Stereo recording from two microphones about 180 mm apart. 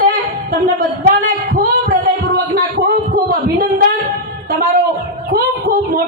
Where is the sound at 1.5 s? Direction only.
55° right (ahead or behind).